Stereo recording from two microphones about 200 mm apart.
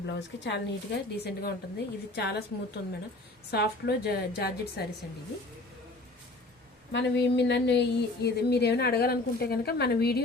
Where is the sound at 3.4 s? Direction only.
55° left (ahead or behind).